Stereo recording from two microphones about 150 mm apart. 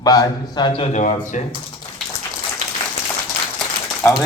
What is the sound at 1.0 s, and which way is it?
Speech, 55° left (ahead or behind).